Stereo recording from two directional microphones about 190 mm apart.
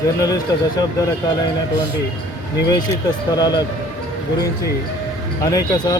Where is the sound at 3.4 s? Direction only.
20° left (ahead or behind).